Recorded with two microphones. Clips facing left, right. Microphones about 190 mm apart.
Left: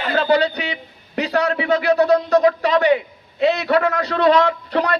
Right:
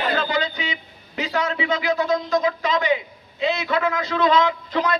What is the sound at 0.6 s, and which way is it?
A man's voice, 65° left (ahead or behind).